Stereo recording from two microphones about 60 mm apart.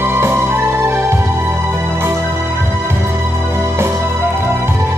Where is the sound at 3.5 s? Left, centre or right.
Right.